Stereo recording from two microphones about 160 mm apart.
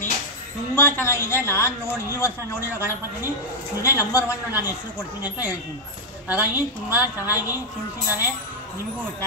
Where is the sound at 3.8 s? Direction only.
20° left (ahead or behind).